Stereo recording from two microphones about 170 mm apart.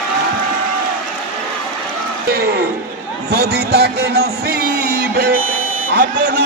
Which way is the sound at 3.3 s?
70° right (ahead or behind).